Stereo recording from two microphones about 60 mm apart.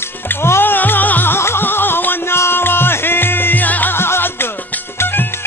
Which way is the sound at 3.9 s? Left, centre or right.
Left.